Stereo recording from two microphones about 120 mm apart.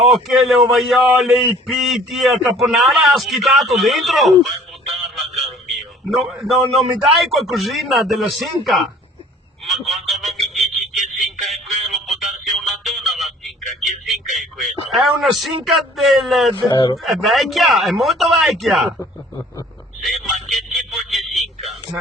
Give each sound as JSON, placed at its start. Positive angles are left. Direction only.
{"t": 0.0, "sound": "speech", "side_deg": 0}
{"t": 5.7, "sound": "a man's voice", "side_deg": 0}
{"t": 9.6, "sound": "a sound", "side_deg": 0}
{"t": 12.3, "sound": "music", "side_deg": 0}
{"t": 16.6, "sound": "speech", "side_deg": 40}
{"t": 17.0, "sound": "speech", "side_deg": 0}
{"t": 20.0, "sound": "a sound", "side_deg": 0}